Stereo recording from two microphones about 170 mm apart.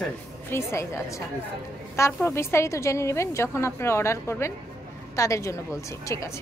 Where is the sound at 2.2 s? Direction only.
15° left (ahead or behind).